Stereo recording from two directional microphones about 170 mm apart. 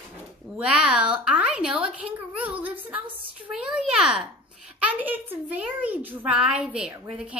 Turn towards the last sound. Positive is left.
turn(degrees=-5)  # may be behind; listen again after turning